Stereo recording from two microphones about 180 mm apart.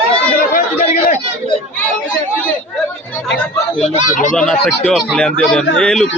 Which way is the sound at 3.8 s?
40° left (ahead or behind).